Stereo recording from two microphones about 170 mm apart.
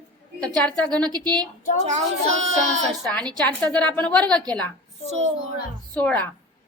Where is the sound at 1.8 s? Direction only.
40° right (ahead or behind).